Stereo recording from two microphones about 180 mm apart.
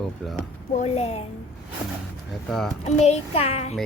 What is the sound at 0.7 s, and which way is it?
Speech, 40° left (ahead or behind).